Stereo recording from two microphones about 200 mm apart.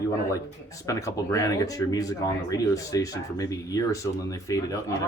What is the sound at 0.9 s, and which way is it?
Speech, 15° left (ahead or behind).